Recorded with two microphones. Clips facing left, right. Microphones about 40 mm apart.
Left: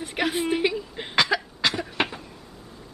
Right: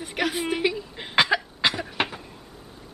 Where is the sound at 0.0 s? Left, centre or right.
Centre.